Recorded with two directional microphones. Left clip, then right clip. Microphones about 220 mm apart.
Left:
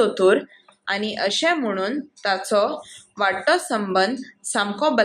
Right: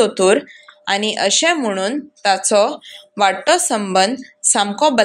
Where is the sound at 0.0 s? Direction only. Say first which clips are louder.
Right 4 dB; 30° right (ahead or behind).